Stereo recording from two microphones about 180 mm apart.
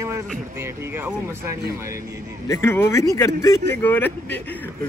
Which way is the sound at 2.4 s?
15° left (ahead or behind).